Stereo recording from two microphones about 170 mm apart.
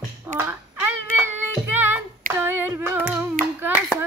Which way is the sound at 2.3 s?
15° right (ahead or behind).